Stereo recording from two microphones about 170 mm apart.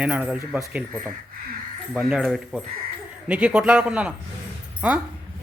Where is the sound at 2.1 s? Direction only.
Centre (ahead or behind).